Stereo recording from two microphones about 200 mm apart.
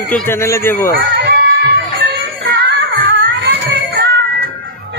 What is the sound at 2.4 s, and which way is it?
Music, 60° right (ahead or behind).